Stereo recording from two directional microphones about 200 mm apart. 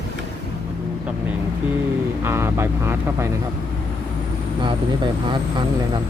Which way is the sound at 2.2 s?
15° right (ahead or behind).